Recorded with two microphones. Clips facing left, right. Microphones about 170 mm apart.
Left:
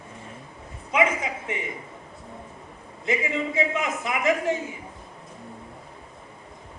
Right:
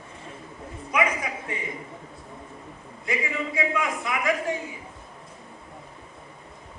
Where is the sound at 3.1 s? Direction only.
20° left (ahead or behind).